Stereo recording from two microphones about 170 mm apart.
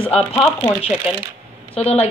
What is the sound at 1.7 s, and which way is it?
Speech, 35° left (ahead or behind).